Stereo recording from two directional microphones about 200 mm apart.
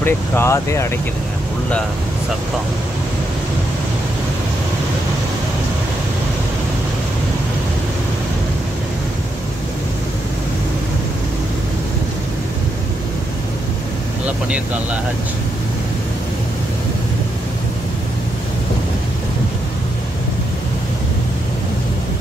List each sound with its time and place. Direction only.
0.0 s speech: 10° left (ahead or behind)